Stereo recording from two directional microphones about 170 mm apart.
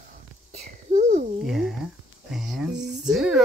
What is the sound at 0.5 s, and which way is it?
Whispering, 40° right (ahead or behind).